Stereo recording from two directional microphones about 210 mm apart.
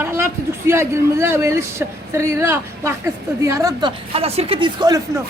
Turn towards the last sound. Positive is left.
turn(degrees=-20)  # may be behind; listen again after turning